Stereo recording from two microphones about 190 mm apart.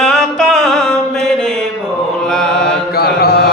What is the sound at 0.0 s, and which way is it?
Music, 5° left (ahead or behind).